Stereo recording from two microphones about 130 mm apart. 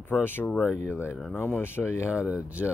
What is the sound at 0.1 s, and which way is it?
Speech, 15° left (ahead or behind).